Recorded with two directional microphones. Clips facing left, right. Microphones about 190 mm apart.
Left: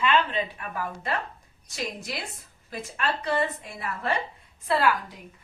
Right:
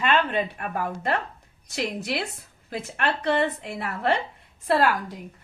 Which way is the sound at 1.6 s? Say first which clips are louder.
Right 5 dB; 65° right (ahead or behind).